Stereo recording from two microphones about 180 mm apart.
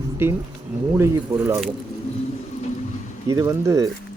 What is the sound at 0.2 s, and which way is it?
Speech, 15° right (ahead or behind).